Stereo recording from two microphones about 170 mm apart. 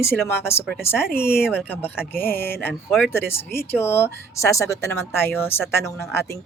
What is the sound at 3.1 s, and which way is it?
Speech, 15° left (ahead or behind).